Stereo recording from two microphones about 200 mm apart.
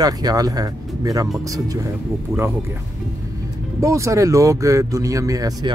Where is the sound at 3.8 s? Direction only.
15° right (ahead or behind).